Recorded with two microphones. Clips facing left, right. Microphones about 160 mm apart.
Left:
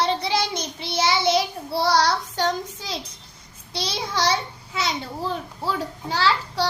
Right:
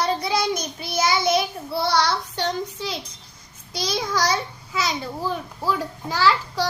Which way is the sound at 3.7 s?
30° left (ahead or behind).